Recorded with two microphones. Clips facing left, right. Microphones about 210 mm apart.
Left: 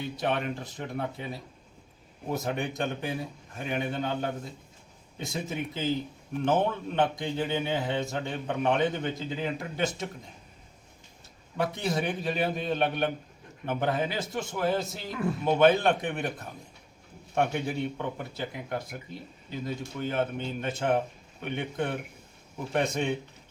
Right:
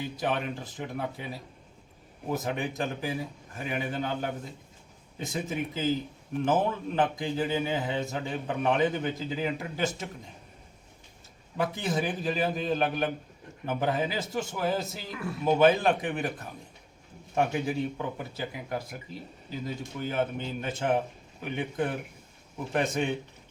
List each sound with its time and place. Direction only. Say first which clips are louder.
0.0 s a man's voice: left 1 dB; 5° right (ahead or behind)
11.5 s a man's voice: even; centre (ahead or behind)
17.3 s a man's voice: right 1 dB; 5° right (ahead or behind)